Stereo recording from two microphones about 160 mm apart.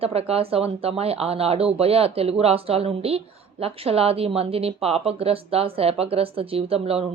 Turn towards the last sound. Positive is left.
turn(degrees=-40)  # may be behind; listen again after turning